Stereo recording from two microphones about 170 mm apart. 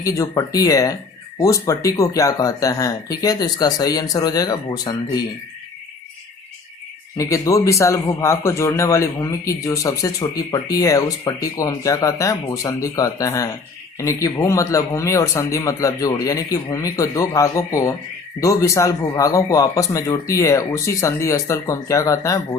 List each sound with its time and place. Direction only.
0.0 s a man's voice: 20° left (ahead or behind)
7.2 s a man's voice: 20° left (ahead or behind)